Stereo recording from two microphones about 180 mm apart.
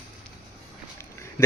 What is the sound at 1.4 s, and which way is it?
Speech, 15° left (ahead or behind).